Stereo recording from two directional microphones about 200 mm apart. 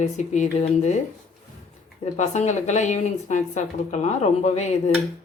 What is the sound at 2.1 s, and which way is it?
A woman's voice, 35° left (ahead or behind).